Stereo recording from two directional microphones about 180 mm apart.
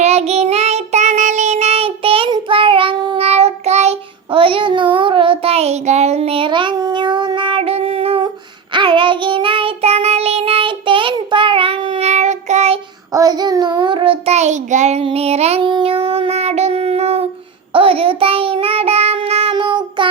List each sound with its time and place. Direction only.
0.0 s child singing: 35° right (ahead or behind)
13.1 s child singing: 20° right (ahead or behind)